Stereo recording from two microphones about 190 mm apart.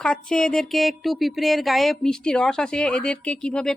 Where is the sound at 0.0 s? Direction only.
5° left (ahead or behind).